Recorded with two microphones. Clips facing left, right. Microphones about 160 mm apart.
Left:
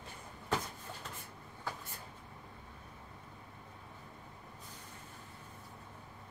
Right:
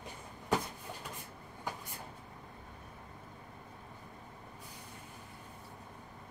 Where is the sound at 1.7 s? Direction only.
15° right (ahead or behind).